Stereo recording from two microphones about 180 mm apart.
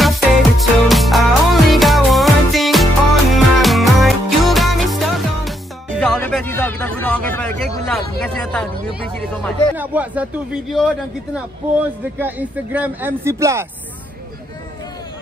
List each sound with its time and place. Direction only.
0.0 s music: centre (ahead or behind)
5.9 s a sound: 5° left (ahead or behind)
9.8 s speech: 10° right (ahead or behind)
12.2 s speech: 10° right (ahead or behind)